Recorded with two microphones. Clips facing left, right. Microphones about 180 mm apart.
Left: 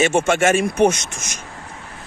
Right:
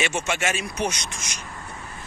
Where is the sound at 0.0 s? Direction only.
50° left (ahead or behind).